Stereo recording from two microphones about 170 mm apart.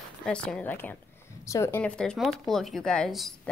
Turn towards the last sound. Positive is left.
turn(degrees=0)  # may be behind; listen again after turning